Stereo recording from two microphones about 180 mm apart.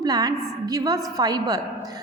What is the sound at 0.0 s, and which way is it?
A woman's voice, 20° right (ahead or behind).